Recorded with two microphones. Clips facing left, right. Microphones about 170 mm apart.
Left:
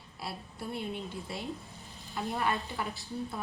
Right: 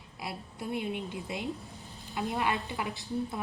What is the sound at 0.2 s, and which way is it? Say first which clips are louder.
A woman's voice: right 1 dB; 20° right (ahead or behind).